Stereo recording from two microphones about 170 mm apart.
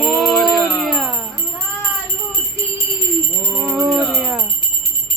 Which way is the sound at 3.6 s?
5° right (ahead or behind).